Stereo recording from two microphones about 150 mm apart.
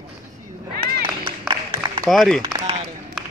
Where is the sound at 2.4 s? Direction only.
40° right (ahead or behind).